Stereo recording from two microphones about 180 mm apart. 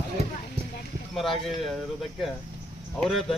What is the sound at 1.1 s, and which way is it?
Speech, centre (ahead or behind).